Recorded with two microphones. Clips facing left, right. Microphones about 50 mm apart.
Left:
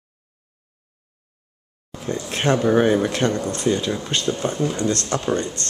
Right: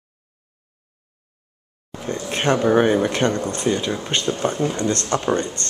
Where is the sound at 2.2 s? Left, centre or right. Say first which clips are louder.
Right 1 dB; centre.